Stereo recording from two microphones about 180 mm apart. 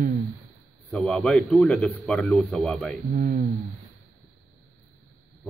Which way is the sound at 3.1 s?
45° right (ahead or behind).